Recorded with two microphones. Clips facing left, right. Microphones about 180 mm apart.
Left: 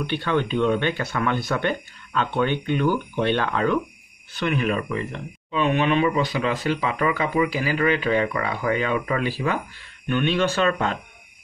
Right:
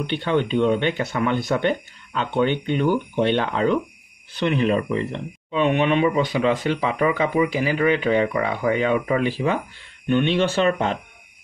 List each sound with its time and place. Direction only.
0.0 s speech: 20° right (ahead or behind)